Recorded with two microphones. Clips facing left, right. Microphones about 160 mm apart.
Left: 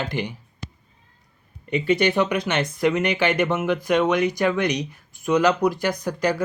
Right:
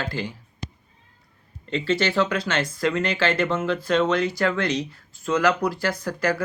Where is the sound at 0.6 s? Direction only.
15° right (ahead or behind).